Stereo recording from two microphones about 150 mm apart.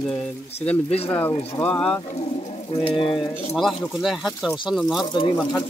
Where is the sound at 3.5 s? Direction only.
Centre (ahead or behind).